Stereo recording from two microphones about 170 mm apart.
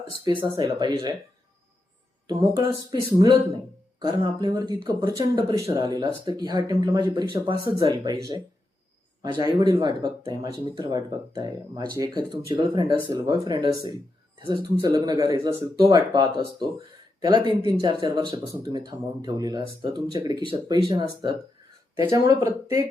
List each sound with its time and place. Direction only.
0.3 s speech: 25° right (ahead or behind)
2.2 s speech: 25° right (ahead or behind)